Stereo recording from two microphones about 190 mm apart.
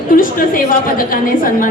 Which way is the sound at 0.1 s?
45° left (ahead or behind).